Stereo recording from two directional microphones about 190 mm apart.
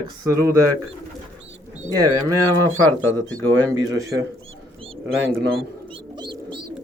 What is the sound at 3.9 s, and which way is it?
Speech, 15° right (ahead or behind).